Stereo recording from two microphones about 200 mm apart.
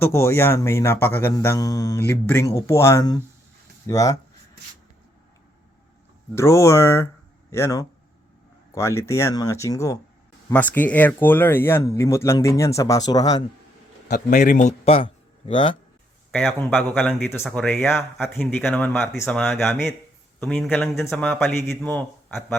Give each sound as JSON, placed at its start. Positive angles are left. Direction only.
{"t": 0.0, "sound": "speech", "side_deg": 15}
{"t": 6.3, "sound": "speech", "side_deg": 15}
{"t": 14.3, "sound": "speech", "side_deg": 40}
{"t": 16.3, "sound": "speech", "side_deg": 5}